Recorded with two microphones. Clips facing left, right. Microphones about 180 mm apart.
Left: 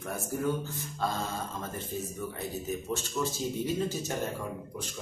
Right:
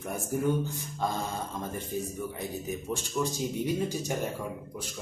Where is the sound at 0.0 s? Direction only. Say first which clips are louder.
Right 2 dB; 20° right (ahead or behind).